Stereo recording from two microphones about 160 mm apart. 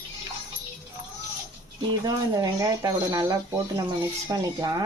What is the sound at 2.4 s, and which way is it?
Speech, 20° right (ahead or behind).